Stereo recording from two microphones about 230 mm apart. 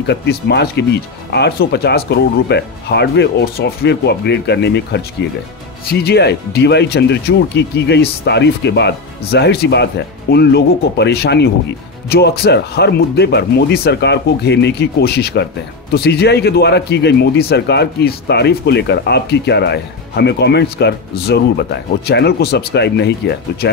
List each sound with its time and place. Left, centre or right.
0.0 s a man's voice: left